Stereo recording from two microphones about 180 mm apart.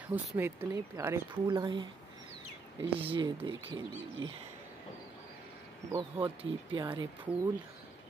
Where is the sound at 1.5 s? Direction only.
25° right (ahead or behind).